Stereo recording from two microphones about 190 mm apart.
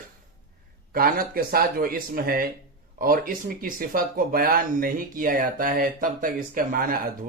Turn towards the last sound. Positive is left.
turn(degrees=-50)  # may be behind; listen again after turning